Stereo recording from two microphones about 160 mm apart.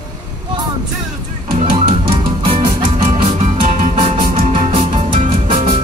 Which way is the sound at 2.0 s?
35° right (ahead or behind).